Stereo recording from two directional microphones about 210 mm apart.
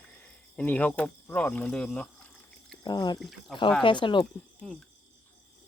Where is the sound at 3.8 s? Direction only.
20° left (ahead or behind).